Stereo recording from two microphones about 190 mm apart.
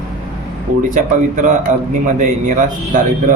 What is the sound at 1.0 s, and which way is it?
Speech, 45° right (ahead or behind).